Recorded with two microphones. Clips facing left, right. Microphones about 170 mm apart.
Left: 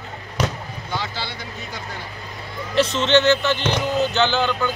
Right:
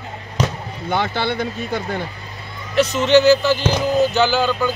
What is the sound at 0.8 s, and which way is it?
Speech, 55° right (ahead or behind).